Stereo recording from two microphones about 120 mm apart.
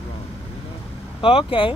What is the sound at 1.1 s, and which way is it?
Speech, 45° left (ahead or behind).